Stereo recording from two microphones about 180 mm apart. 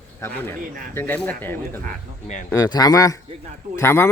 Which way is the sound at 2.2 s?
40° left (ahead or behind).